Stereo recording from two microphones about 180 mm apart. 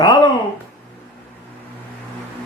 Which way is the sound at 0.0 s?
25° left (ahead or behind).